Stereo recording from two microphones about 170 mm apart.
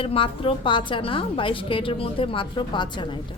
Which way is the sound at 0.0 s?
30° left (ahead or behind).